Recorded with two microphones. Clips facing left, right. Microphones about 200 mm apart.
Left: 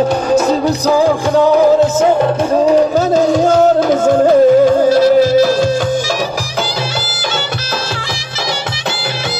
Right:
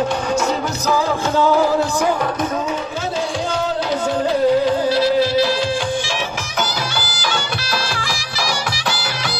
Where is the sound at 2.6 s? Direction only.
40° left (ahead or behind).